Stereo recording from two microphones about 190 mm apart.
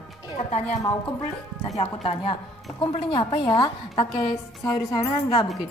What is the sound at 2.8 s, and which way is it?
A woman's voice, 25° left (ahead or behind).